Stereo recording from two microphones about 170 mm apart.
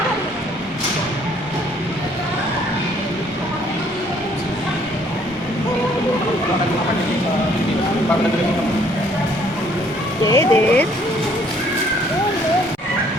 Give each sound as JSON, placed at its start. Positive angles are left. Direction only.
{"t": 10.2, "sound": "speech", "side_deg": 15}